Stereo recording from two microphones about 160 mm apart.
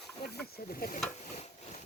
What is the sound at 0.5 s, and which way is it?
Snake, 70° left (ahead or behind).